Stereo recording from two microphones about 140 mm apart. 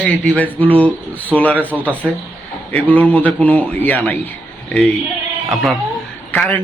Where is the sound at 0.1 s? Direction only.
10° left (ahead or behind).